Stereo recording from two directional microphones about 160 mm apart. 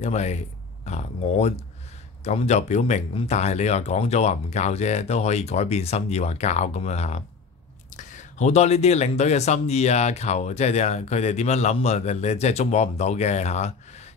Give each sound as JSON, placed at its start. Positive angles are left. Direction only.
{"t": 0.0, "sound": "speech", "side_deg": 45}